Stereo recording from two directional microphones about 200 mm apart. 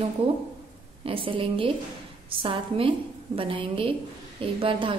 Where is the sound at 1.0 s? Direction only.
25° right (ahead or behind).